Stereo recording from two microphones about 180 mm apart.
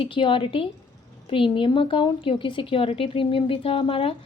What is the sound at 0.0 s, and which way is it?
A woman's voice, 30° left (ahead or behind).